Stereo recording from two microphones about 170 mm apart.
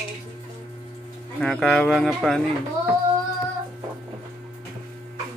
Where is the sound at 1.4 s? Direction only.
5° left (ahead or behind).